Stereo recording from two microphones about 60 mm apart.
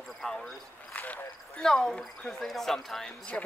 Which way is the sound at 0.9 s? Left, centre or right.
Left.